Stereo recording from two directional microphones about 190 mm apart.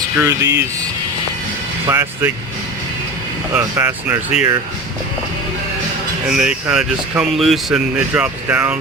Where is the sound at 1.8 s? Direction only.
15° right (ahead or behind).